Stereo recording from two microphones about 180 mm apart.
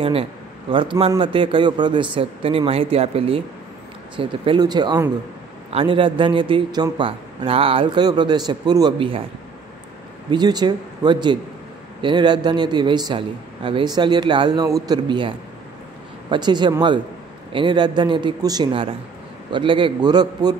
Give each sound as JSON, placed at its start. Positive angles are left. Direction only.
{"t": 0.0, "sound": "a man's voice", "side_deg": -30}
{"t": 10.3, "sound": "a man's voice", "side_deg": -25}